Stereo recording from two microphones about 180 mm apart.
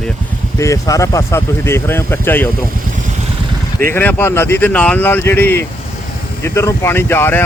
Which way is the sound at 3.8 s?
10° left (ahead or behind).